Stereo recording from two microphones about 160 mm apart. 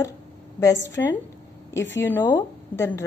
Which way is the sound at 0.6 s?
20° left (ahead or behind).